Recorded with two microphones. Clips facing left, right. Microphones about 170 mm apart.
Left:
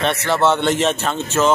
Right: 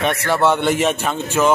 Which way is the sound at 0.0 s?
10° right (ahead or behind).